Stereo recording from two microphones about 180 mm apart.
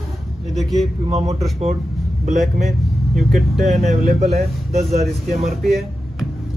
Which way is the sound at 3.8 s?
35° right (ahead or behind).